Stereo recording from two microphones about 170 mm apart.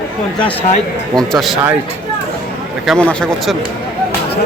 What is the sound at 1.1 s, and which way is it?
Speech, centre (ahead or behind).